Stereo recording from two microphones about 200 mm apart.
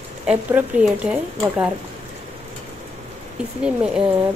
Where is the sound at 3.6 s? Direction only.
5° right (ahead or behind).